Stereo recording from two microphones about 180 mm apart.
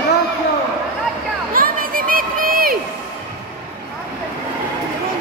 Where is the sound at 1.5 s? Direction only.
50° right (ahead or behind).